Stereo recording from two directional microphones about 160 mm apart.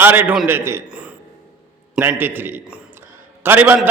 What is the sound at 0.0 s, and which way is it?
A man's voice, 15° right (ahead or behind).